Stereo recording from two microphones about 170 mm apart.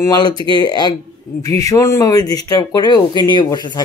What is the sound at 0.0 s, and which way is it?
Speech, 20° left (ahead or behind).